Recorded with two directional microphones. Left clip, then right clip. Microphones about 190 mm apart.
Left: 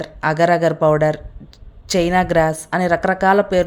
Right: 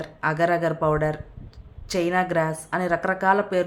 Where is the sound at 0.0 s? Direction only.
30° left (ahead or behind).